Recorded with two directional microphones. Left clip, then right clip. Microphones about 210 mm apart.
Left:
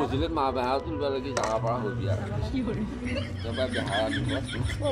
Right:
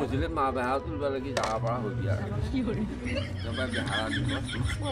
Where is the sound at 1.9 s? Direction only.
10° right (ahead or behind).